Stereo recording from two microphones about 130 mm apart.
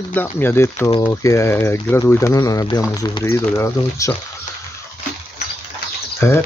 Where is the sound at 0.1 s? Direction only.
15° left (ahead or behind).